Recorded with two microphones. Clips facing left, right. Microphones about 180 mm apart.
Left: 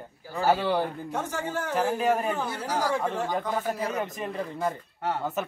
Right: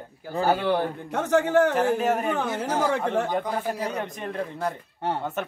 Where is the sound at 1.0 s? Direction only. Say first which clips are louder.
Right 8 dB; 70° right (ahead or behind).